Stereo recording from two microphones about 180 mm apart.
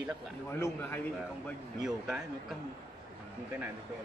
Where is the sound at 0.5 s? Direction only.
15° left (ahead or behind).